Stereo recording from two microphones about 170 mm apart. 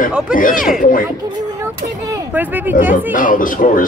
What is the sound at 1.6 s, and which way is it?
Speech, 15° right (ahead or behind).